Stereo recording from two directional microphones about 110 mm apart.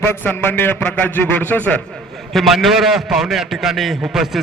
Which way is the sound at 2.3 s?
Centre (ahead or behind).